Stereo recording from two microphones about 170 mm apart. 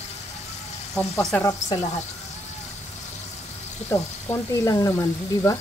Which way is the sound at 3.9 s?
15° left (ahead or behind).